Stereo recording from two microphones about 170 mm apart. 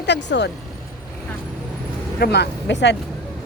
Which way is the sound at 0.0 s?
90° left.